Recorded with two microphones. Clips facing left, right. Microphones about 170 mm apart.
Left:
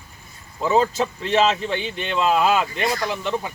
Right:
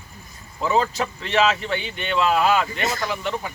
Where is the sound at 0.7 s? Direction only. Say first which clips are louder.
Left 2 dB; 25° left (ahead or behind).